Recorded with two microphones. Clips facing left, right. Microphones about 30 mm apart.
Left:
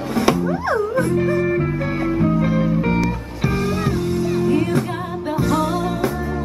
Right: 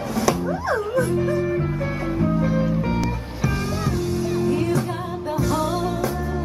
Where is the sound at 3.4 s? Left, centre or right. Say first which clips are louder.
Left 4 dB; left.